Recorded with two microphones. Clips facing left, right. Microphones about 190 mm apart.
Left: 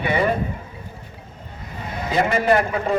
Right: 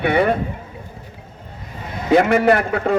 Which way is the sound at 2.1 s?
65° right (ahead or behind).